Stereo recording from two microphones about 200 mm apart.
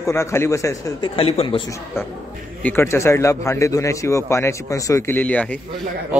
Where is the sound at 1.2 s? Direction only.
30° left (ahead or behind).